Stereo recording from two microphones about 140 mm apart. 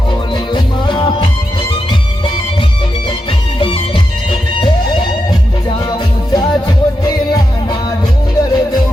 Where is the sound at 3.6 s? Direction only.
40° left (ahead or behind).